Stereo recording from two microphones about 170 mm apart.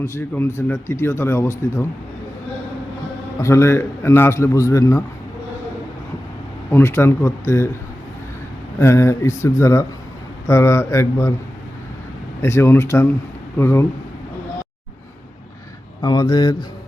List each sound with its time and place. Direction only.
0.0 s speech: 15° left (ahead or behind)
3.3 s speech: 15° left (ahead or behind)
6.7 s speech: 15° left (ahead or behind)
8.8 s speech: 15° left (ahead or behind)
12.4 s speech: 15° left (ahead or behind)
16.0 s speech: 25° left (ahead or behind)